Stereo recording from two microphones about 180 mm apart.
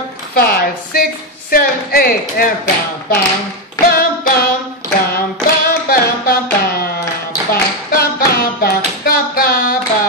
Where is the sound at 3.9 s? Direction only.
55° left (ahead or behind).